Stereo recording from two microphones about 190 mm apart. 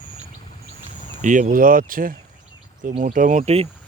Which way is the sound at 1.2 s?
40° right (ahead or behind).